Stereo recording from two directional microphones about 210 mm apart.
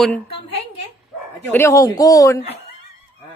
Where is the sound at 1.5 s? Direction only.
15° left (ahead or behind).